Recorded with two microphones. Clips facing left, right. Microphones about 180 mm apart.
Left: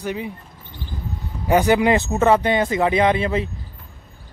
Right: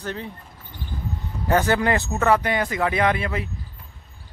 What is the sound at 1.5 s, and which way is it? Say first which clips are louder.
Speech: left 4 dB; 15° left (ahead or behind).